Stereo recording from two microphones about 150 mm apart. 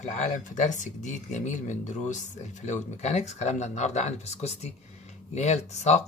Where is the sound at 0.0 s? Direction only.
50° left (ahead or behind).